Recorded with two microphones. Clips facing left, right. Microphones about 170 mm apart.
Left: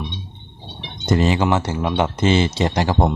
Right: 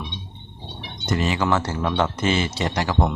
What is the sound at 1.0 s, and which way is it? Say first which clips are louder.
Speech: left 5 dB; 25° left (ahead or behind).